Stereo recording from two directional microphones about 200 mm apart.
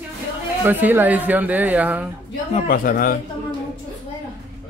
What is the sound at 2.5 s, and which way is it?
Speech, 45° left (ahead or behind).